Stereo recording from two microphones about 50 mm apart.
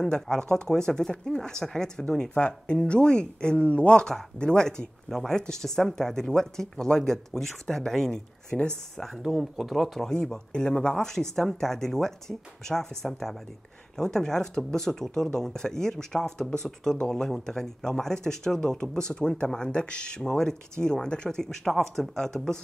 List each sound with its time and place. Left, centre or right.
0.0 s speech: centre
4.0 s speech: centre